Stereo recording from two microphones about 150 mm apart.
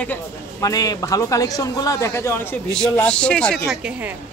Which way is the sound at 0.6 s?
25° left (ahead or behind).